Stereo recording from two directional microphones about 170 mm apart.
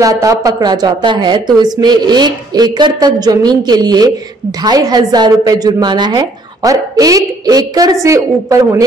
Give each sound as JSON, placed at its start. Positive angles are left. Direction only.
{"t": 0.0, "sound": "a woman's voice", "side_deg": -20}